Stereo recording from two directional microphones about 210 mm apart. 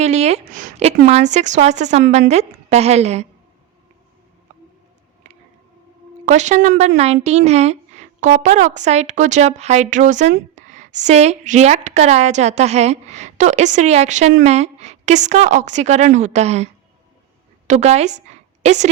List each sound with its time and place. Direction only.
0.0 s a woman's voice: 30° right (ahead or behind)
6.2 s a woman's voice: 35° right (ahead or behind)
17.7 s a woman's voice: 30° right (ahead or behind)